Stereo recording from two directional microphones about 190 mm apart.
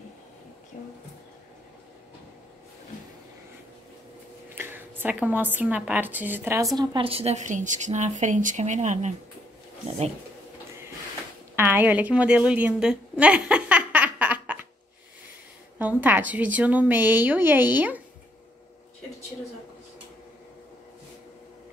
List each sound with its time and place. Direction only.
4.6 s a woman's voice: 10° right (ahead or behind); by 10.1 s 35° right (ahead or behind)
11.5 s a woman's voice: 10° right (ahead or behind)
15.8 s a woman's voice: 10° right (ahead or behind)